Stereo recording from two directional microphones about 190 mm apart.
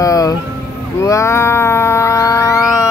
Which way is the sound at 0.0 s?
20° left (ahead or behind).